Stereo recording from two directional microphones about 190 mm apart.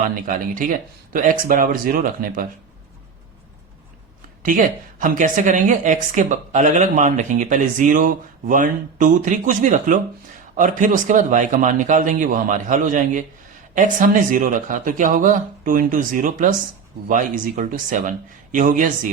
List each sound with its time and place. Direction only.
0.3 s speech: 45° right (ahead or behind)
4.4 s a woman's voice: 45° right (ahead or behind)